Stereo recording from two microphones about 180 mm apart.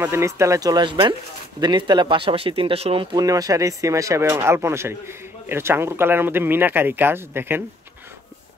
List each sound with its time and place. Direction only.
0.0 s speech: 15° right (ahead or behind); by 3.3 s 30° right (ahead or behind)
3.3 s speech: 20° right (ahead or behind)